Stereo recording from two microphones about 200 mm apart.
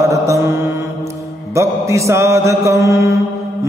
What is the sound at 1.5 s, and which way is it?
Mantra, 15° right (ahead or behind).